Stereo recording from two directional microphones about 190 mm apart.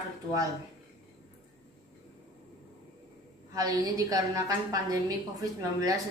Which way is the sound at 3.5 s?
20° right (ahead or behind).